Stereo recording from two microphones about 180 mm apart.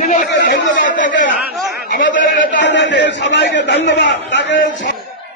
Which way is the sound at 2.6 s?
80° left.